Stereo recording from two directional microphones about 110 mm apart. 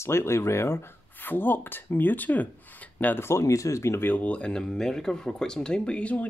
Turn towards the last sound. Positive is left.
turn(degrees=10)  # may be behind; listen again after turning